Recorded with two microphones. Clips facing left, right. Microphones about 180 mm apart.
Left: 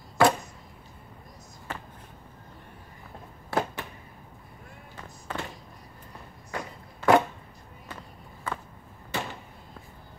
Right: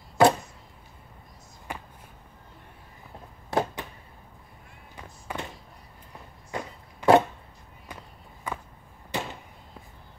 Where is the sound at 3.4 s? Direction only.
20° right (ahead or behind).